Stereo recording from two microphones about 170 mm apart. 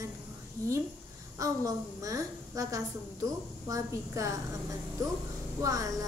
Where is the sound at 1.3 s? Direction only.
20° right (ahead or behind).